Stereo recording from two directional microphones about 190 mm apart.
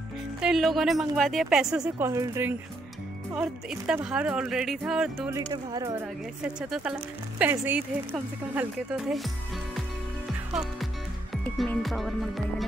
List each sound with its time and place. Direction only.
0.4 s speech: centre (ahead or behind)
2.0 s speech: 15° right (ahead or behind)
5.5 s speech: 20° right (ahead or behind)
6.4 s speech: 5° right (ahead or behind)
10.5 s speech: 5° right (ahead or behind)